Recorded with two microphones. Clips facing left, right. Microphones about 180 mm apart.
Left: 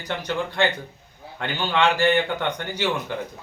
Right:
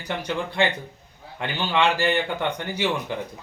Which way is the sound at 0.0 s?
10° right (ahead or behind).